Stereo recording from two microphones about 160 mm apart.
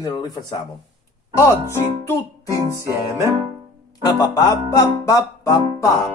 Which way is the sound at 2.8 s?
20° right (ahead or behind).